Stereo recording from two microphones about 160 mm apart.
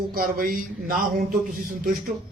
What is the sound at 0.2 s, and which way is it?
Speech, 60° right (ahead or behind).